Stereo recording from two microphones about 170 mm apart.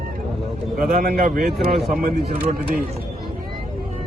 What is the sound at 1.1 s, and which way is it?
Speech, 60° right (ahead or behind).